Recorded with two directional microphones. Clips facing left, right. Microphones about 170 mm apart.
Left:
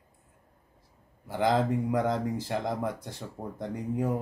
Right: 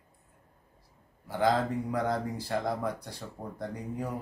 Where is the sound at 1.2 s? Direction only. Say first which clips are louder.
Left 1 dB; 20° left (ahead or behind).